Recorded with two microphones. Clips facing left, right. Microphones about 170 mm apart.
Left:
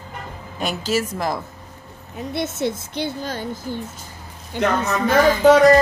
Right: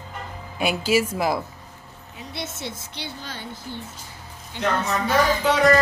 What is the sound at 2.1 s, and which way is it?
Speech, 50° left (ahead or behind).